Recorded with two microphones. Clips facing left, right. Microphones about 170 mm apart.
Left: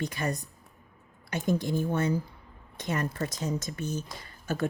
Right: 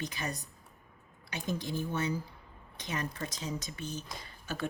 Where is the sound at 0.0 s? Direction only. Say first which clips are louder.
Left 6 dB; 50° left (ahead or behind).